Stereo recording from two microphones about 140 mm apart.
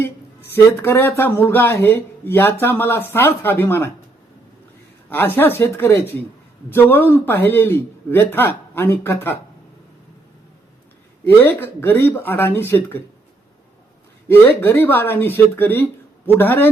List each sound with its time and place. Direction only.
0.5 s speech: 15° left (ahead or behind)
5.0 s speech: 15° left (ahead or behind)
11.3 s speech: 15° left (ahead or behind)
14.3 s speech: 15° left (ahead or behind)